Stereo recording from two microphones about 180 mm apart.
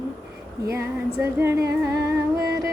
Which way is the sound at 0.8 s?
15° right (ahead or behind).